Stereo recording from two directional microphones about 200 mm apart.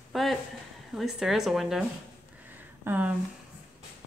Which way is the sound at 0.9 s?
Centre (ahead or behind).